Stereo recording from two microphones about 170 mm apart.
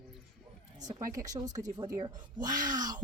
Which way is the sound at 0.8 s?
20° right (ahead or behind).